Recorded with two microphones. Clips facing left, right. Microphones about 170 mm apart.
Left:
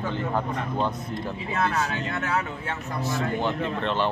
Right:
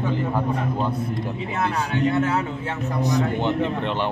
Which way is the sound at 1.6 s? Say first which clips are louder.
Right 1 dB; 15° right (ahead or behind).